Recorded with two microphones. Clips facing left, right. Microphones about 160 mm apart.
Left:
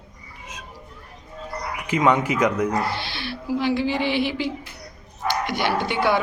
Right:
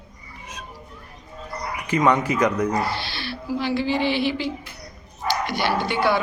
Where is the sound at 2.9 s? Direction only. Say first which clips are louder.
Even; 20° left (ahead or behind).